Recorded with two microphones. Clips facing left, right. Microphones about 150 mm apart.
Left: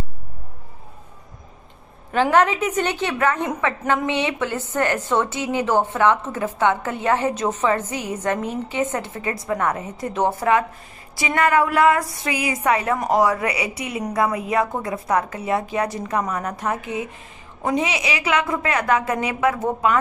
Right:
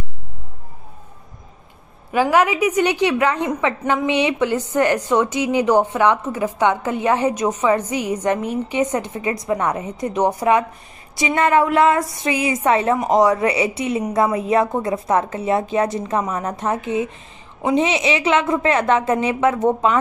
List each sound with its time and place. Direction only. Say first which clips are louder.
2.3 s a woman's voice: right 2 dB; 10° right (ahead or behind)